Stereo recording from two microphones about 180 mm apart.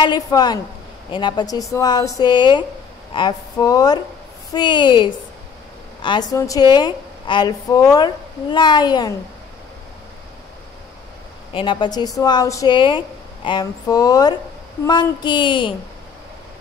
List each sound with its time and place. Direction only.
0.0 s a woman's voice: 25° left (ahead or behind)
11.5 s a woman's voice: 25° left (ahead or behind)